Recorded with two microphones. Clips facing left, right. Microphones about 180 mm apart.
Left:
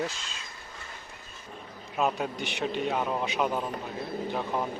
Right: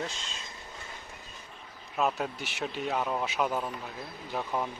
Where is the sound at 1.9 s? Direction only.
Centre (ahead or behind).